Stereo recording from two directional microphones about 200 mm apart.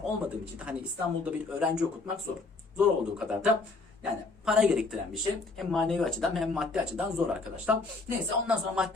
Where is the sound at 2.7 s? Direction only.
5° right (ahead or behind).